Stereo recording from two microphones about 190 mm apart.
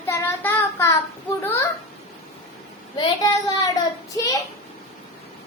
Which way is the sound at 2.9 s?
20° left (ahead or behind).